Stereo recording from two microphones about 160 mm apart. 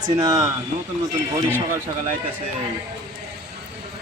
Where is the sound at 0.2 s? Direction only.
20° right (ahead or behind).